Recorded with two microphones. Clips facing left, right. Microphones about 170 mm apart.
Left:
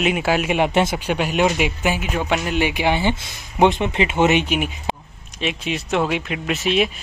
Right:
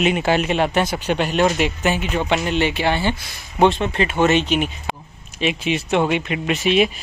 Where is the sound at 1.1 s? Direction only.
10° left (ahead or behind).